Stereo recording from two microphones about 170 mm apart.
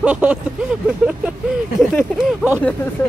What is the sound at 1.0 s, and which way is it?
Speech, 5° right (ahead or behind).